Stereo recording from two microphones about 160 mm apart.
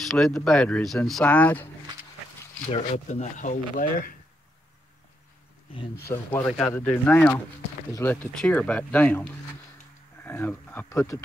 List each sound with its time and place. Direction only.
0.0 s speech: centre (ahead or behind)
2.7 s speech: 40° left (ahead or behind)
6.0 s speech: 10° left (ahead or behind)
10.2 s speech: 15° left (ahead or behind)